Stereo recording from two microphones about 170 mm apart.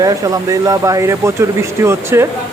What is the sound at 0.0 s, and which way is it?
Speech, 20° right (ahead or behind).